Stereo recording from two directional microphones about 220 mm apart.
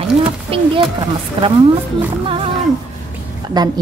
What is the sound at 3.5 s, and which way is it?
Speech, 20° right (ahead or behind).